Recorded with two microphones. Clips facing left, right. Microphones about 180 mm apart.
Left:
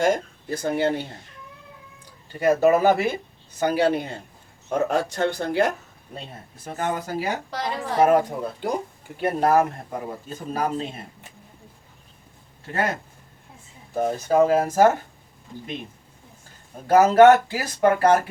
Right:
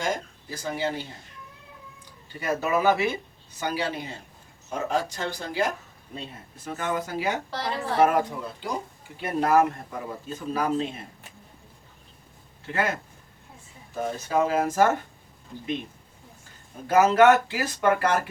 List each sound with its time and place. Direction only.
0.0 s speech: 55° left (ahead or behind)
2.4 s speech: 45° left (ahead or behind)
6.7 s speech: 40° left (ahead or behind)
7.5 s a woman's voice: 15° left (ahead or behind)
8.0 s speech: 45° left (ahead or behind)
13.9 s speech: 45° left (ahead or behind)
16.8 s speech: 40° left (ahead or behind)